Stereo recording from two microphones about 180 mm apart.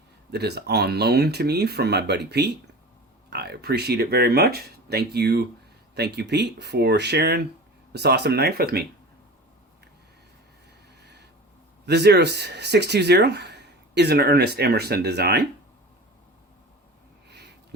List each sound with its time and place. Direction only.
0.3 s speech: 65° right (ahead or behind)
11.9 s speech: 70° right (ahead or behind)
17.2 s a sound: 65° right (ahead or behind)